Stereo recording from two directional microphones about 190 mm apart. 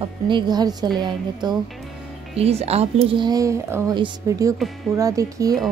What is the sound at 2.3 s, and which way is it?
Speech, 35° right (ahead or behind).